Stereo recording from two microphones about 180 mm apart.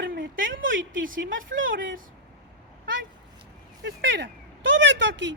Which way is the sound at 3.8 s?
75° right (ahead or behind).